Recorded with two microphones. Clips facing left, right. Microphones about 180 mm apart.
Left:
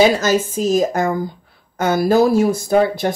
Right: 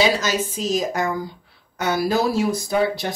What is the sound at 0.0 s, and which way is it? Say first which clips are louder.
Speech: left 6 dB; 50° left (ahead or behind).